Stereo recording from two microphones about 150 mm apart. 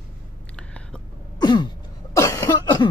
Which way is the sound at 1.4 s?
30° left (ahead or behind).